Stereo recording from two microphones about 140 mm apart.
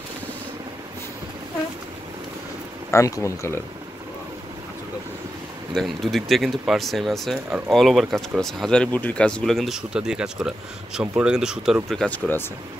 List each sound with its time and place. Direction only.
2.9 s speech: 20° left (ahead or behind)
5.8 s speech: centre (ahead or behind)
12.1 s speech: 15° left (ahead or behind)